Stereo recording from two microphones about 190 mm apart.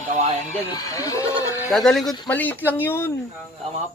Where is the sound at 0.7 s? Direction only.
20° left (ahead or behind).